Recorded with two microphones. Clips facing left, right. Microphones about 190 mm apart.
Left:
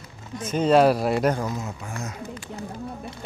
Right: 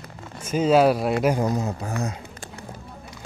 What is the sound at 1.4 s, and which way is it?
Speech, 35° right (ahead or behind).